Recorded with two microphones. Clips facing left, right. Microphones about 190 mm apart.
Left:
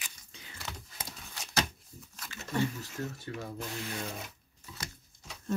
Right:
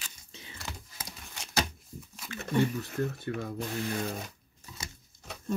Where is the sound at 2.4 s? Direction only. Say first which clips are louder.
Right 4 dB; 60° right (ahead or behind).